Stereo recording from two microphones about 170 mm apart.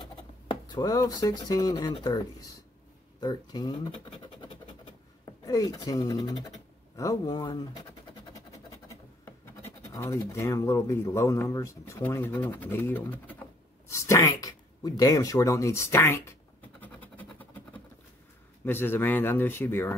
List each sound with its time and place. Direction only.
0.7 s speech: 20° left (ahead or behind)
8.8 s speech: 15° left (ahead or behind)
16.8 s a sound: 10° left (ahead or behind)
18.7 s speech: 15° left (ahead or behind)